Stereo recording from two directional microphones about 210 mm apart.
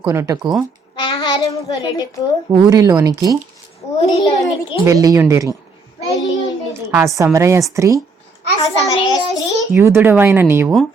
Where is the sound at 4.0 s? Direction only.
25° left (ahead or behind).